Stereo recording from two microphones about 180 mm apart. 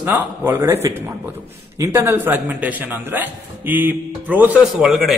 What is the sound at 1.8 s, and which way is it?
Speech, 15° right (ahead or behind).